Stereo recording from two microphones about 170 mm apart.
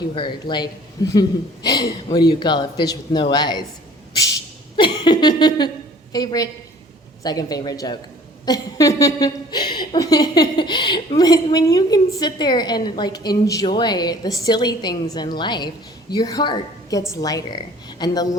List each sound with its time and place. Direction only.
0.1 s a woman's voice: 30° left (ahead or behind)
4.8 s a sound: 25° left (ahead or behind)
6.1 s a woman's voice: 20° left (ahead or behind)